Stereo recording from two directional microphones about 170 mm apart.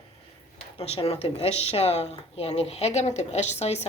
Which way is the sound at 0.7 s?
35° left (ahead or behind).